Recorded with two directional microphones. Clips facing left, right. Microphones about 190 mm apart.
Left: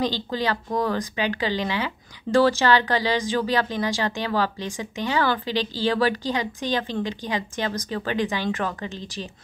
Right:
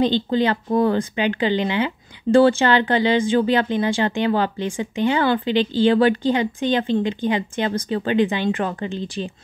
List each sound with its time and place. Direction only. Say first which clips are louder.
0.0 s speech: right 7 dB; 25° right (ahead or behind)